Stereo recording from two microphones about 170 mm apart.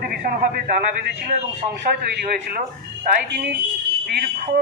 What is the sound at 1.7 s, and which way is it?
A man's voice, 65° right (ahead or behind).